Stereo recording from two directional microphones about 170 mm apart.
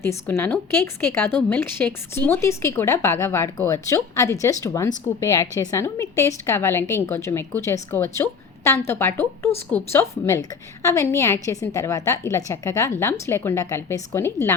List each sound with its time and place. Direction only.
0.0 s a woman's voice: 15° left (ahead or behind)